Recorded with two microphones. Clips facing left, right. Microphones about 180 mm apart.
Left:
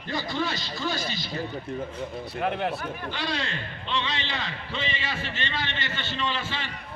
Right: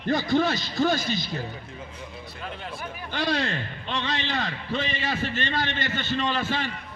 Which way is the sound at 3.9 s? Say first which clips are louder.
Right 2 dB; 45° right (ahead or behind).